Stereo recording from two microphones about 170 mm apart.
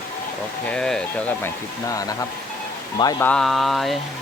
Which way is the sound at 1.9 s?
20° left (ahead or behind).